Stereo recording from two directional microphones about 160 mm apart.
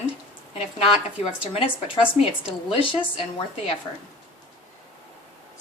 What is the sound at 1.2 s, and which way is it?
Speech, 35° left (ahead or behind).